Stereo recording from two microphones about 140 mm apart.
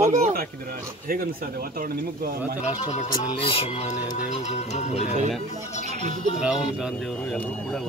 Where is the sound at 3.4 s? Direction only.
40° left (ahead or behind).